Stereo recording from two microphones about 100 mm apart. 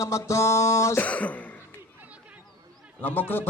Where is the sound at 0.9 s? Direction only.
15° left (ahead or behind).